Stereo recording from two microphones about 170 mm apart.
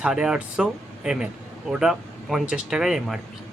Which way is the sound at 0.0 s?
5° right (ahead or behind).